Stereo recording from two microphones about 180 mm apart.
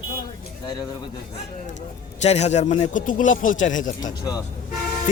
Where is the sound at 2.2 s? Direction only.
35° left (ahead or behind).